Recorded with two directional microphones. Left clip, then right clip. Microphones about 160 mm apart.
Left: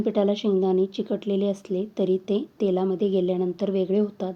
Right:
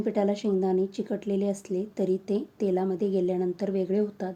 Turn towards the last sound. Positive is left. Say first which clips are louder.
# left 3 dB
turn(degrees=15)  # may be behind; listen again after turning